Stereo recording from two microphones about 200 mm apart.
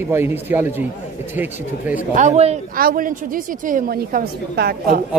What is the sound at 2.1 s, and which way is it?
Speech, 35° right (ahead or behind).